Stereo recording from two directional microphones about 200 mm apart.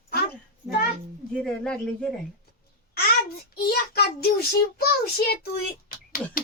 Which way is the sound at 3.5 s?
50° left (ahead or behind).